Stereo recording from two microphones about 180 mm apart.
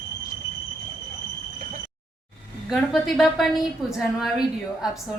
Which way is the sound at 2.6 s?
Centre (ahead or behind).